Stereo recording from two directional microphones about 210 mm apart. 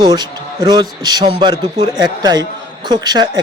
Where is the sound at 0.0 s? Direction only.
20° right (ahead or behind).